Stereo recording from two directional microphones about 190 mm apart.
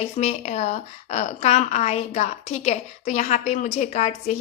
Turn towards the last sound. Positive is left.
turn(degrees=35)  # may be behind; listen again after turning